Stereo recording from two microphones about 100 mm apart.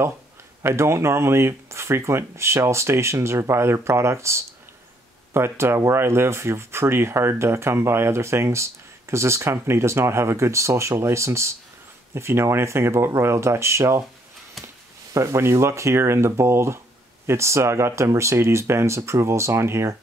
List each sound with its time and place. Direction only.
0.6 s speech: 25° right (ahead or behind)
15.1 s speech: 30° right (ahead or behind)